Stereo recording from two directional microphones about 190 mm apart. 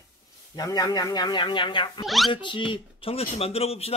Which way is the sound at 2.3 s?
25° left (ahead or behind).